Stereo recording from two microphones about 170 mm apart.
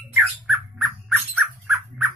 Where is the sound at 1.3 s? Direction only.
5° right (ahead or behind).